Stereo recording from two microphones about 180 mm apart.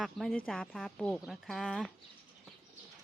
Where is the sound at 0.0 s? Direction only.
Centre (ahead or behind).